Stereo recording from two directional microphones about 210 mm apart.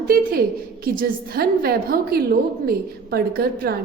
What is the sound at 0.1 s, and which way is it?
A woman's voice, 45° right (ahead or behind).